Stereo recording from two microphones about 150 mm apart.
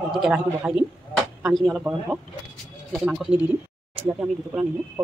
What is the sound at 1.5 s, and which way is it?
Speech, centre (ahead or behind).